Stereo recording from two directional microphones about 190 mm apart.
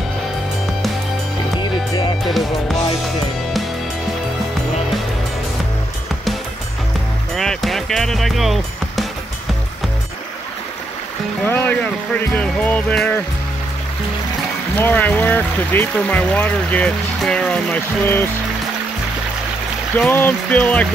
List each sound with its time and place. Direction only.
1.6 s music: 25° left (ahead or behind)
7.3 s music: centre (ahead or behind)
11.4 s speech: 10° left (ahead or behind)
14.8 s speech: 10° left (ahead or behind)
20.0 s speech: 10° left (ahead or behind)